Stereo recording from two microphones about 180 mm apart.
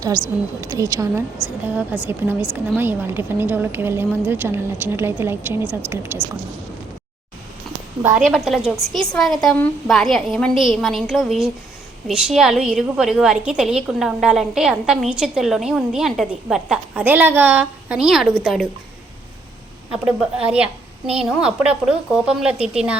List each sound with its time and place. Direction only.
0.6 s a woman's voice: 15° right (ahead or behind)
8.2 s a woman's voice: centre (ahead or behind)
19.9 s a woman's voice: 5° right (ahead or behind)